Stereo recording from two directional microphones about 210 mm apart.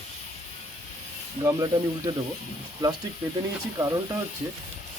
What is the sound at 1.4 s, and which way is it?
Speech, 15° right (ahead or behind).